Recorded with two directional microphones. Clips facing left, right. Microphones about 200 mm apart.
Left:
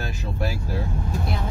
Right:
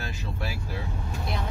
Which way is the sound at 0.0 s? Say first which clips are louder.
Left 6 dB; 45° left (ahead or behind).